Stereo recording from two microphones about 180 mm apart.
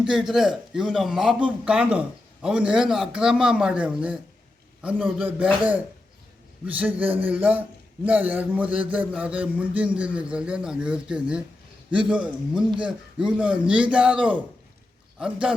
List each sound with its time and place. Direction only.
0.0 s a man's voice: 5° right (ahead or behind)
6.7 s a man's voice: 10° right (ahead or behind)